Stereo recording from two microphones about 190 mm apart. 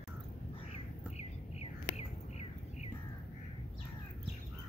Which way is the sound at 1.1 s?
35° left (ahead or behind).